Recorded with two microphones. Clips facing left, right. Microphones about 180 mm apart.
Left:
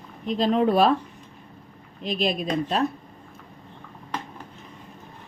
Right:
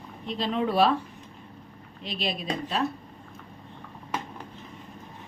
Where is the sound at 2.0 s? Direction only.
45° left (ahead or behind).